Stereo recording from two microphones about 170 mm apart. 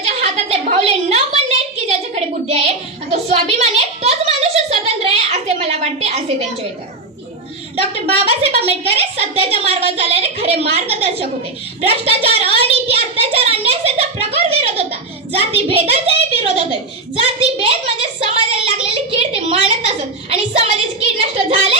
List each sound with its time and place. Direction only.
0.0 s a sound: 40° right (ahead or behind)
7.8 s a woman's voice: 35° right (ahead or behind)
17.7 s a woman's voice: 35° right (ahead or behind)